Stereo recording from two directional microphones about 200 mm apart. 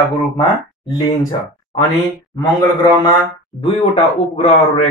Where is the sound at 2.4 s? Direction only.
20° left (ahead or behind).